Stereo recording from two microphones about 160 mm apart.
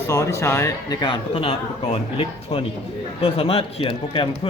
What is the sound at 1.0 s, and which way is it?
A man's voice, 30° left (ahead or behind).